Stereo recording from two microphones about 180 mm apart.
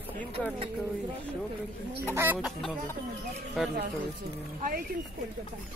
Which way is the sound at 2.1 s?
10° right (ahead or behind).